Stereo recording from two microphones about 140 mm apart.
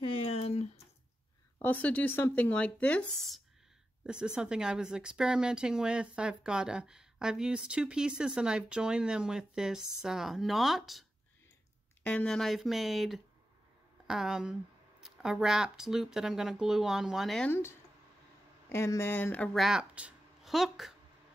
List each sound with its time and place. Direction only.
0.0 s a sound: 40° left (ahead or behind)
1.6 s speech: 10° left (ahead or behind)
4.0 s a woman's voice: 5° right (ahead or behind)
12.0 s a woman's voice: 10° left (ahead or behind)
17.5 s speech: 15° left (ahead or behind)
19.5 s speech: centre (ahead or behind)